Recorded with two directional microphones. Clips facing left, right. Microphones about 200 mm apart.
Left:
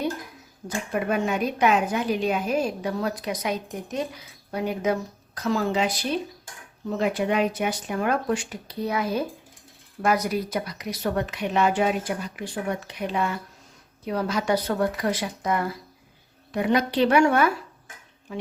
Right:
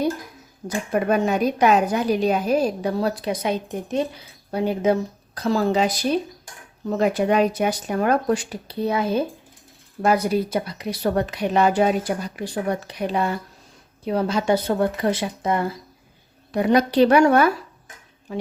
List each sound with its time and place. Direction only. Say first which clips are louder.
0.6 s a woman's voice: right 5 dB; 35° right (ahead or behind)
16.5 s a woman's voice: right 4 dB; 40° right (ahead or behind)